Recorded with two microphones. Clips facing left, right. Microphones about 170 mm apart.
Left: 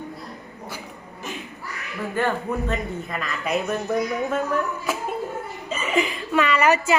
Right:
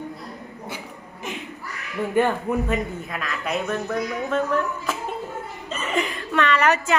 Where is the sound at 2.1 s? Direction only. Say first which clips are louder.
Right 3 dB; 15° right (ahead or behind).